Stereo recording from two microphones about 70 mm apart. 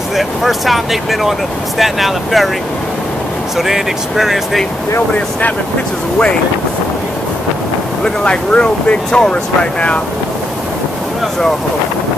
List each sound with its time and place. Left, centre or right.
0.1 s speech: centre
3.5 s speech: centre
8.0 s speech: centre